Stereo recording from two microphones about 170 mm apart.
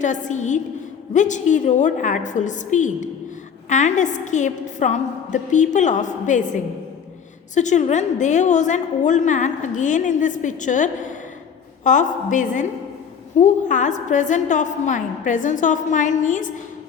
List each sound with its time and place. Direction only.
0.0 s a woman's voice: 45° left (ahead or behind)
7.5 s a woman's voice: 45° left (ahead or behind)